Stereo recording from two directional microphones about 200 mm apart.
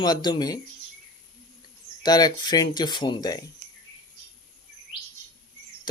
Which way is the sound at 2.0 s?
20° left (ahead or behind).